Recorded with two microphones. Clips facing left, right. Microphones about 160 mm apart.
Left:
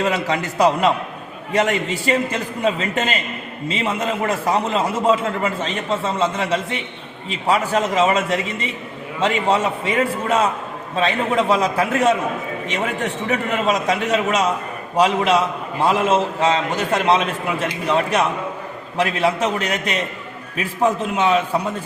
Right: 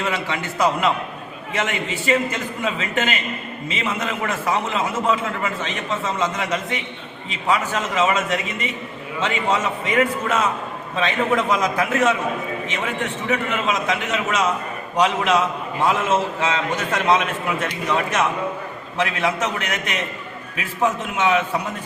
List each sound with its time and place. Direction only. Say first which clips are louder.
0.0 s a man's voice: left 4 dB; 40° left (ahead or behind)
19.2 s a man's voice: left 4 dB; 35° left (ahead or behind)